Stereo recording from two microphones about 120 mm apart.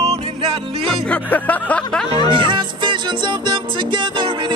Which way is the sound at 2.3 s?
45° right (ahead or behind).